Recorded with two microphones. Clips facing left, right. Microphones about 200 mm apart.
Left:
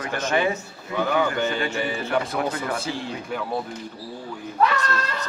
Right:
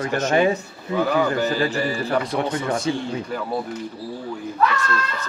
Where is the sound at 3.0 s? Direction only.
Centre (ahead or behind).